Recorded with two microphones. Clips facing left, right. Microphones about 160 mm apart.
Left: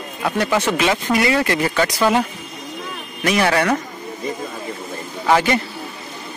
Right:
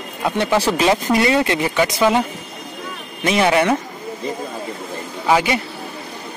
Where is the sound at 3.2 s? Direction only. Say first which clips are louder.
Right 2 dB; 20° right (ahead or behind).